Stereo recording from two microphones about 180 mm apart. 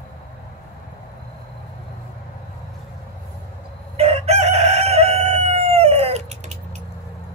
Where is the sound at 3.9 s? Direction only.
35° right (ahead or behind).